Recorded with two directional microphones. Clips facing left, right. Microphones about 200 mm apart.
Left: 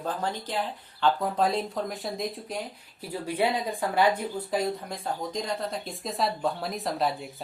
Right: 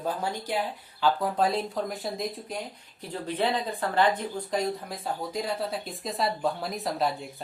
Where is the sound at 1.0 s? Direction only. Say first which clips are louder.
Even; centre (ahead or behind).